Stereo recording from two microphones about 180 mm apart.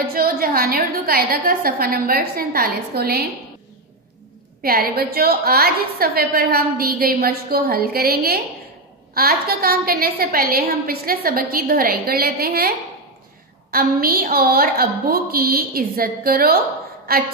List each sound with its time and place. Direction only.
0.1 s a woman's voice: 55° right (ahead or behind)
4.6 s a woman's voice: 55° right (ahead or behind)